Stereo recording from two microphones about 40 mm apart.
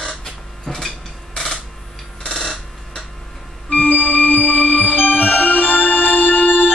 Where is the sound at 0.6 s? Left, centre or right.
Centre.